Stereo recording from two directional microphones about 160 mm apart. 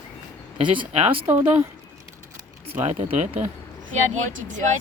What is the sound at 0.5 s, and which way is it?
Speech, 30° right (ahead or behind).